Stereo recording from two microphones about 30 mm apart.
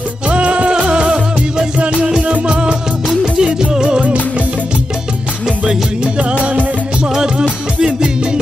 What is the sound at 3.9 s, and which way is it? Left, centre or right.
Music, right.